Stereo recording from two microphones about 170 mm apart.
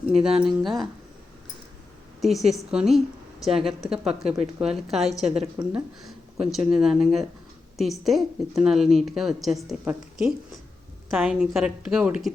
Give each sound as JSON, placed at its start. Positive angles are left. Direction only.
{"t": 0.2, "sound": "a woman's voice", "side_deg": -5}
{"t": 2.2, "sound": "a woman's voice", "side_deg": 0}
{"t": 5.2, "sound": "a woman's voice", "side_deg": -35}
{"t": 5.7, "sound": "a woman's voice", "side_deg": -5}